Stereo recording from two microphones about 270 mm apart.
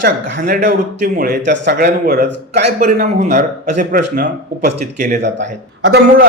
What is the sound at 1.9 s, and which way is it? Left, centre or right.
A man's voice, right.